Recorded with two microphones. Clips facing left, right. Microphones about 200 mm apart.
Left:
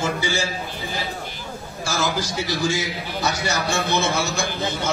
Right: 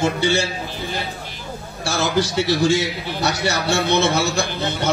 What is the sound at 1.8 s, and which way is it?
A man's voice, 65° right (ahead or behind).